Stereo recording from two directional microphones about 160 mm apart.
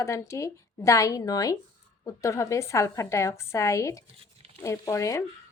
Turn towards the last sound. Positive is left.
turn(degrees=20)  # may be behind; listen again after turning